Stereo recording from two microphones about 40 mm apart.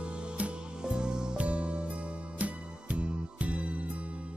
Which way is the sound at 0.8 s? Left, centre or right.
Centre.